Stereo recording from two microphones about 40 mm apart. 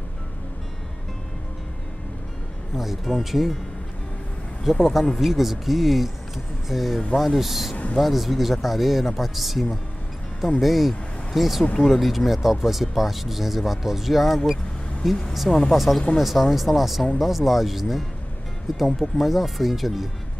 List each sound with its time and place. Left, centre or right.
2.7 s speech: centre
4.7 s speech: centre
11.6 s speech: left
11.9 s speech: centre
15.0 s speech: centre
15.3 s speech: centre